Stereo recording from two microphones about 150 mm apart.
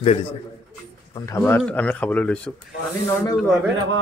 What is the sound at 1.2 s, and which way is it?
Speech, 15° left (ahead or behind).